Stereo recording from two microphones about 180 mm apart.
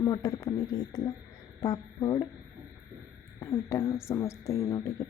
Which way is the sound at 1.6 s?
20° left (ahead or behind).